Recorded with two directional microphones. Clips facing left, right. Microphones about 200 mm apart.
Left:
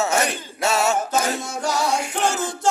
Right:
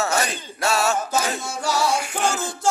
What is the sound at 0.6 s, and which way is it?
Male singing, 20° left (ahead or behind).